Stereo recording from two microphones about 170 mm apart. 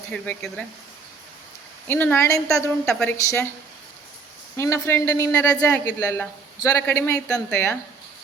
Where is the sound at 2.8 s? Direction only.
5° left (ahead or behind).